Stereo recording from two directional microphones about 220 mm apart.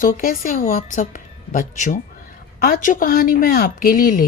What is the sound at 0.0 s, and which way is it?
Speech, 40° left (ahead or behind).